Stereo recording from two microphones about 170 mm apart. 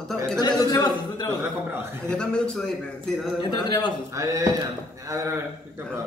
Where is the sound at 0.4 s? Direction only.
25° left (ahead or behind).